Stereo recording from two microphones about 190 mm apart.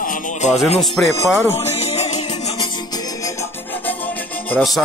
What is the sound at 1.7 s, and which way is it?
Music, 35° left (ahead or behind).